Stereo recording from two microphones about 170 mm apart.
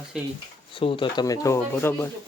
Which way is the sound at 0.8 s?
30° left (ahead or behind).